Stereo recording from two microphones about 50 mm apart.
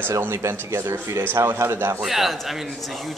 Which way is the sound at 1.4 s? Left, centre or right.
Right.